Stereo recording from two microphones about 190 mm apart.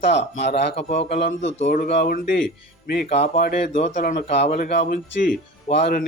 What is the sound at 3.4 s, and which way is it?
Speech, 50° left (ahead or behind).